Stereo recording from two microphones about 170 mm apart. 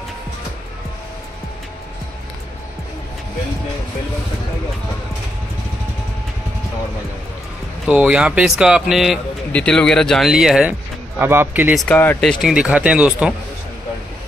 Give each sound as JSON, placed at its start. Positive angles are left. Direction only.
{"t": 7.8, "sound": "speech", "side_deg": -5}
{"t": 11.8, "sound": "speech", "side_deg": 10}